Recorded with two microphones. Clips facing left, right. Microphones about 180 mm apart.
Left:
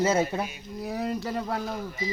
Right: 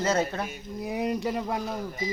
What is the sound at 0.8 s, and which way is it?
Speech, 15° right (ahead or behind).